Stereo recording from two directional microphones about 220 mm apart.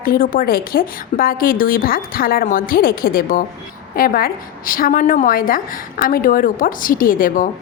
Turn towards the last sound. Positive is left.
turn(degrees=40)  # may be behind; listen again after turning